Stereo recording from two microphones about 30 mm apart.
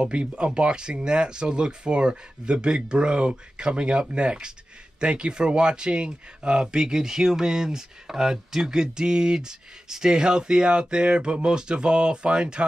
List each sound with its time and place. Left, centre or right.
0.0 s speech: right